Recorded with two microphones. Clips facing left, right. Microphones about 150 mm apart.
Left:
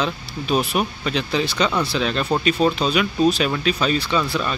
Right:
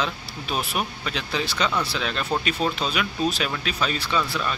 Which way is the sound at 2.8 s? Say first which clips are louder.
Left 6 dB; 5° right (ahead or behind).